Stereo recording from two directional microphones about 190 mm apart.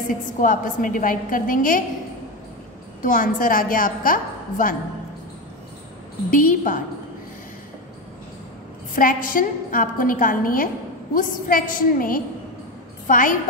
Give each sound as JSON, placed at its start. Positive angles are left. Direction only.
{"t": 0.4, "sound": "a woman's voice", "side_deg": 45}
{"t": 3.0, "sound": "a woman's voice", "side_deg": 45}
{"t": 6.3, "sound": "a woman's voice", "side_deg": 45}
{"t": 8.9, "sound": "a woman's voice", "side_deg": 45}